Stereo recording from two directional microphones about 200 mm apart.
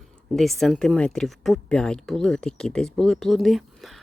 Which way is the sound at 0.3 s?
Centre (ahead or behind).